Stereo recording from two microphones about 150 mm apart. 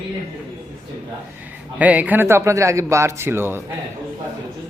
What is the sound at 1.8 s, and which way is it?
Speech, 10° right (ahead or behind).